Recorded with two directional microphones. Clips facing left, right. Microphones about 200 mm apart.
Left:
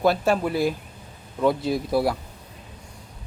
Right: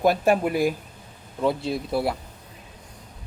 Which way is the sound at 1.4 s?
Centre (ahead or behind).